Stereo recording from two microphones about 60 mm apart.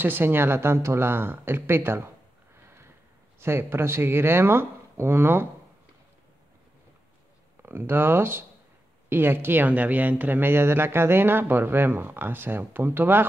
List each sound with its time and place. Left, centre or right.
0.0 s speech: right
7.6 s speech: right
9.7 s speech: right